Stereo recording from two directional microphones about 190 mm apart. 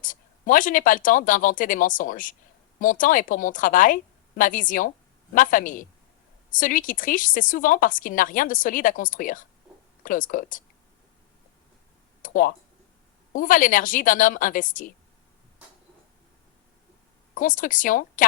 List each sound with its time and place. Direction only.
0.0 s speech: 45° left (ahead or behind)
12.2 s speech: 45° left (ahead or behind)
17.3 s speech: 45° left (ahead or behind)